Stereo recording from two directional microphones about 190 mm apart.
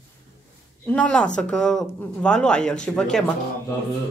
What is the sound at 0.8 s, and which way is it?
Speech, 5° left (ahead or behind).